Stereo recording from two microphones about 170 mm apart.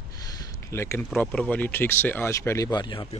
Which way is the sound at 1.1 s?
5° left (ahead or behind).